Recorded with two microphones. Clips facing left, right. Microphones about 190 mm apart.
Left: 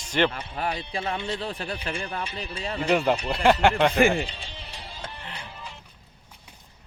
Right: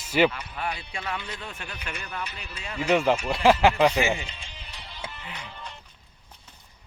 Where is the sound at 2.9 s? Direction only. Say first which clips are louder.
Right 1 dB; centre (ahead or behind).